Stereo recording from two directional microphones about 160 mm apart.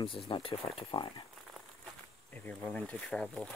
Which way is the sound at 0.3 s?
35° left (ahead or behind).